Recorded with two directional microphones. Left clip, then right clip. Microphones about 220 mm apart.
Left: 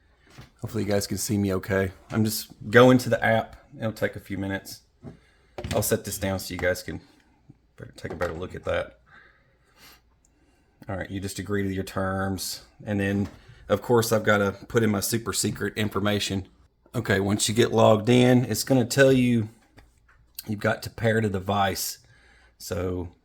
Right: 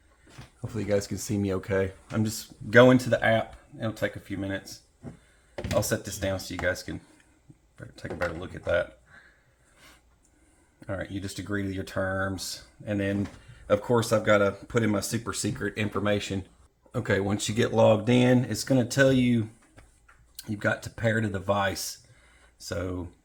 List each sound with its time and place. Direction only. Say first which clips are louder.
0.6 s speech: left 1 dB; 40° left (ahead or behind)
5.8 s speech: left 3 dB; 45° left (ahead or behind)
9.7 s a sound: left 3 dB; 45° left (ahead or behind)
10.8 s speech: left 1 dB; 45° left (ahead or behind)